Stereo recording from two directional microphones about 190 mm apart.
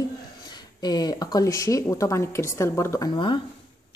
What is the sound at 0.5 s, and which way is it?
Speech, 20° left (ahead or behind).